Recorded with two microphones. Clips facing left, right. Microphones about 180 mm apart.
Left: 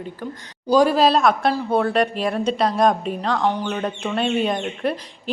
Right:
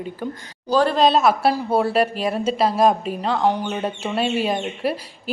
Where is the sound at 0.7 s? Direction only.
10° left (ahead or behind).